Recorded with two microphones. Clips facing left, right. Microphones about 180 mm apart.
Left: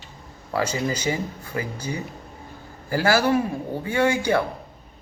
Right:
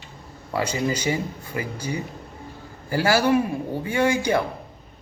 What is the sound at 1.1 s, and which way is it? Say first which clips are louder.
Speech: right 1 dB; 15° right (ahead or behind).